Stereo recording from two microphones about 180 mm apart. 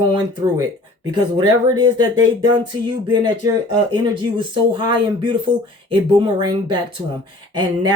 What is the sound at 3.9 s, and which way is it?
Speech, 25° right (ahead or behind).